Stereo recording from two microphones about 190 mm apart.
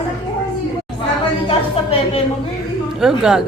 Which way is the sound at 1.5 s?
30° left (ahead or behind).